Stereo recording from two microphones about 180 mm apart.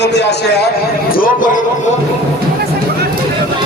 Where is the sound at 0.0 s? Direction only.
70° left (ahead or behind).